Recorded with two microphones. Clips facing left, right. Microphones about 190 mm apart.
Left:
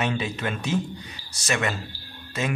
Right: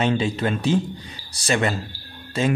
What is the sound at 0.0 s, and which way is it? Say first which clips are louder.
Speech: right 6 dB; 30° right (ahead or behind).